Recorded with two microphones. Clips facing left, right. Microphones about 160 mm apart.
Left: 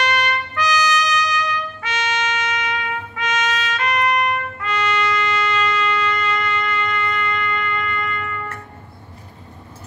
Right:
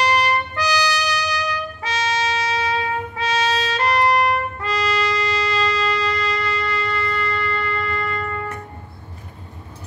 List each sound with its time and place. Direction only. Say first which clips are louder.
0.0 s trumpet: right 2 dB; 35° right (ahead or behind)